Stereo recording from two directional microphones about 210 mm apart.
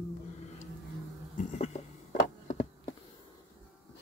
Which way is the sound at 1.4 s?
35° left (ahead or behind).